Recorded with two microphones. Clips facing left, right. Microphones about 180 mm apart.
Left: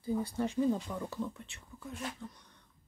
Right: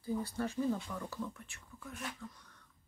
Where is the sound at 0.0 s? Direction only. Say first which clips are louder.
Left 3 dB; 15° left (ahead or behind).